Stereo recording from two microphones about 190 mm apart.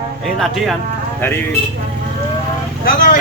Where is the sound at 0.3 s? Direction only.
Centre (ahead or behind).